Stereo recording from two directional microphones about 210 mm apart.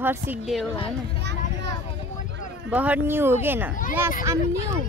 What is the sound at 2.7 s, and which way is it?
Speech, 5° right (ahead or behind).